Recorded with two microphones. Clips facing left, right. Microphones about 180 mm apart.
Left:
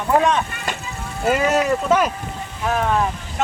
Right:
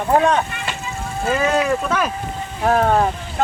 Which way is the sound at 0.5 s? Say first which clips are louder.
Even; 45° left (ahead or behind).